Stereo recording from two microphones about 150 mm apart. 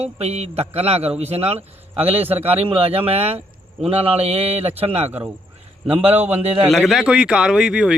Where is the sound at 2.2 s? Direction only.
15° right (ahead or behind).